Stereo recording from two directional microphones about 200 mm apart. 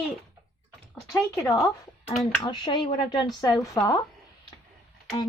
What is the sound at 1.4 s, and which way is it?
A woman's voice, 15° left (ahead or behind).